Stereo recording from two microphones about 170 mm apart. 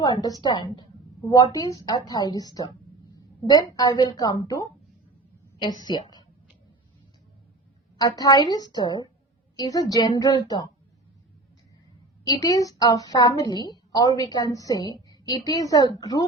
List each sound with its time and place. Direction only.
0.0 s a woman's voice: 20° left (ahead or behind)
7.9 s a woman's voice: 20° left (ahead or behind)
12.3 s a woman's voice: 20° left (ahead or behind)